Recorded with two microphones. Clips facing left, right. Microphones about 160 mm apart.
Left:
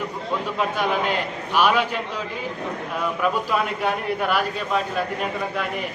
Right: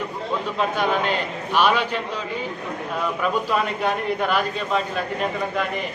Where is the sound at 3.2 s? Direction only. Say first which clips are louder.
Even; 10° left (ahead or behind).